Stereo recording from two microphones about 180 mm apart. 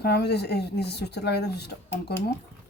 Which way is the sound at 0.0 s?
65° left (ahead or behind).